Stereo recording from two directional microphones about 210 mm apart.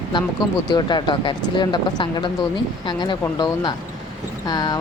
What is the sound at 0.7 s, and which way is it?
Speech, 20° left (ahead or behind).